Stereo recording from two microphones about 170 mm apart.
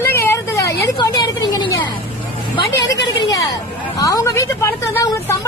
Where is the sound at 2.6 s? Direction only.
20° left (ahead or behind).